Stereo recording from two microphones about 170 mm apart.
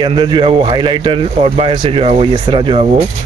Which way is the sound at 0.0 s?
25° right (ahead or behind).